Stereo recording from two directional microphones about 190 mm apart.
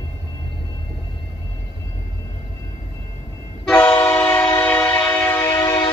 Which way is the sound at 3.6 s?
5° left (ahead or behind).